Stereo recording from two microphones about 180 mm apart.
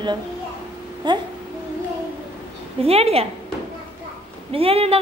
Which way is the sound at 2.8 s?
35° right (ahead or behind).